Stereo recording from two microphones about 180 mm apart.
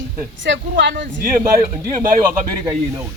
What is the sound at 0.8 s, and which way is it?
Speech, 80° right.